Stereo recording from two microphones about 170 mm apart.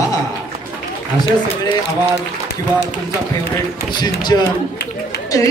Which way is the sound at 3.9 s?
25° left (ahead or behind).